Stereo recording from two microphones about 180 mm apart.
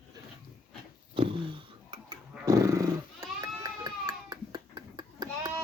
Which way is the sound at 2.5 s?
20° right (ahead or behind).